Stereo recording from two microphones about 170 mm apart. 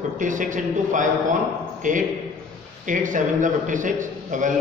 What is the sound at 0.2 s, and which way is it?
A man's voice, 50° right (ahead or behind).